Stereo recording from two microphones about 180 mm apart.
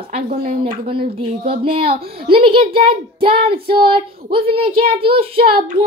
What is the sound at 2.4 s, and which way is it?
A child's voice, 30° right (ahead or behind).